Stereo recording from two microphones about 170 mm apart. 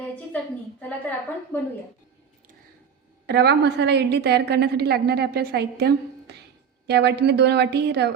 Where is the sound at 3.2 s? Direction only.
75° right (ahead or behind).